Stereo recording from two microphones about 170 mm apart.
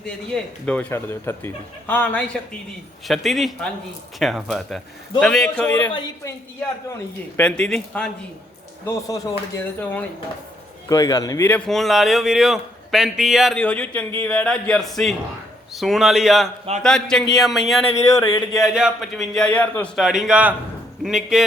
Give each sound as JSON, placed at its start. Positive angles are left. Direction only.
{"t": 0.0, "sound": "a man's voice", "side_deg": 5}
{"t": 7.3, "sound": "a man's voice", "side_deg": 5}
{"t": 8.9, "sound": "a man's voice", "side_deg": 20}
{"t": 18.2, "sound": "speech", "side_deg": 20}
{"t": 18.5, "sound": "a man's voice", "side_deg": -5}
{"t": 20.0, "sound": "a man's voice", "side_deg": -5}